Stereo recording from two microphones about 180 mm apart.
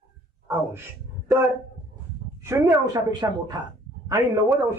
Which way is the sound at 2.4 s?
20° right (ahead or behind).